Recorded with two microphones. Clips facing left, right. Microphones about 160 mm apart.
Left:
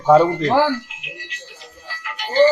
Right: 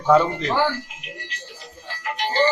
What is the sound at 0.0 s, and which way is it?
Speech, 35° left (ahead or behind).